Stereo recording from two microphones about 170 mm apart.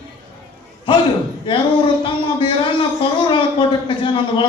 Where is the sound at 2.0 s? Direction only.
30° left (ahead or behind).